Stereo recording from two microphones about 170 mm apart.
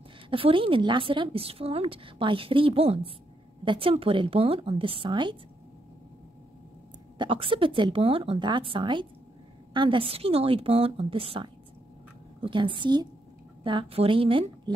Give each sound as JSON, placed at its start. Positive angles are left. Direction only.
{"t": 0.3, "sound": "a woman's voice", "side_deg": -30}
{"t": 7.2, "sound": "a woman's voice", "side_deg": -30}